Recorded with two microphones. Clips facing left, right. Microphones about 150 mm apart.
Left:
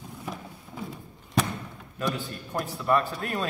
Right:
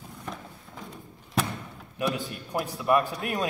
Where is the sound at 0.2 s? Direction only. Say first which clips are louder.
Left 1 dB; 5° left (ahead or behind).